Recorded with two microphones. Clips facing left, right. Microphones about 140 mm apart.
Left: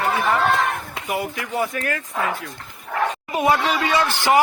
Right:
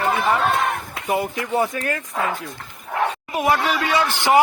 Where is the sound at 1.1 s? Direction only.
30° right (ahead or behind).